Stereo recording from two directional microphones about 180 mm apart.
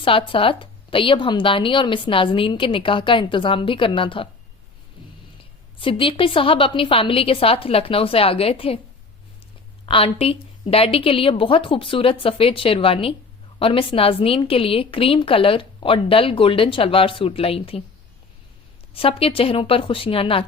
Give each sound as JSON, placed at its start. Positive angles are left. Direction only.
{"t": 0.0, "sound": "a woman's voice", "side_deg": 30}
{"t": 5.8, "sound": "a woman's voice", "side_deg": 30}
{"t": 9.8, "sound": "a woman's voice", "side_deg": 30}
{"t": 18.9, "sound": "a woman's voice", "side_deg": 30}